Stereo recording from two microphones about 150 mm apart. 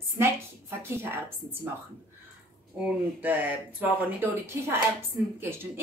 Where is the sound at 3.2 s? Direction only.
10° right (ahead or behind).